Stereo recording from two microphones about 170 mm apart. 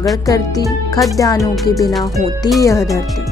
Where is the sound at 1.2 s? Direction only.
20° left (ahead or behind).